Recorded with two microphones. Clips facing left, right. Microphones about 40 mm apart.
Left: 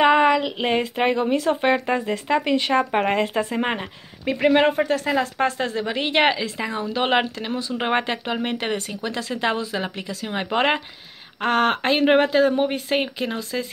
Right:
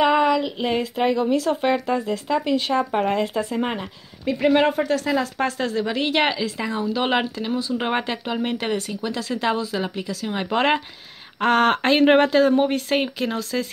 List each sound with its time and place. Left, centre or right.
0.0 s a sound: left
0.4 s speech: left
7.7 s speech: left
10.3 s speech: left
11.4 s speech: centre